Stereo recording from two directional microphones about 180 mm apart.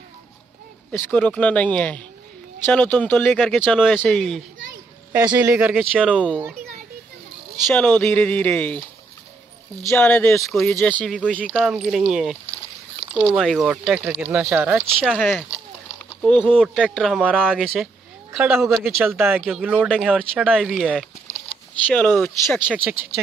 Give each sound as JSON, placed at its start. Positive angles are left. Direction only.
{"t": 0.9, "sound": "speech", "side_deg": 10}
{"t": 5.4, "sound": "speech", "side_deg": -10}
{"t": 7.6, "sound": "speech", "side_deg": 5}
{"t": 9.9, "sound": "speech", "side_deg": 10}
{"t": 15.0, "sound": "speech", "side_deg": 0}
{"t": 16.3, "sound": "speech", "side_deg": -25}
{"t": 16.5, "sound": "speech", "side_deg": 0}
{"t": 18.9, "sound": "speech", "side_deg": -10}
{"t": 22.2, "sound": "speech", "side_deg": 10}